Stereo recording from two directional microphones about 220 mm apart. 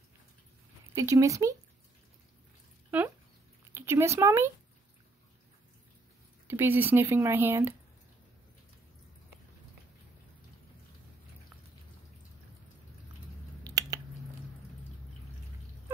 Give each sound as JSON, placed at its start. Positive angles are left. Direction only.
{"t": 0.9, "sound": "speech", "side_deg": -15}
{"t": 2.9, "sound": "a sound", "side_deg": -5}
{"t": 3.7, "sound": "speech", "side_deg": -10}
{"t": 6.4, "sound": "speech", "side_deg": -10}
{"t": 13.7, "sound": "finger snapping", "side_deg": -15}